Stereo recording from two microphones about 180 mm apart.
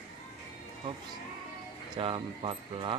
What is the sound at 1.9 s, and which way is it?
Speech, 30° right (ahead or behind).